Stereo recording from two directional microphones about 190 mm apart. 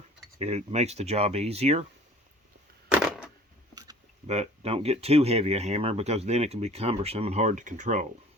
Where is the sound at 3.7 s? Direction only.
20° right (ahead or behind).